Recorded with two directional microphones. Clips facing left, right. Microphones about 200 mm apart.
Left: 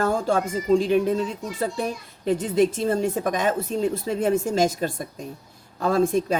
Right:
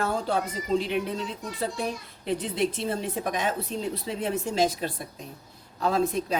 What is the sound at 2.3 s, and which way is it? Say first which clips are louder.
Speech: left 7 dB; 45° left (ahead or behind).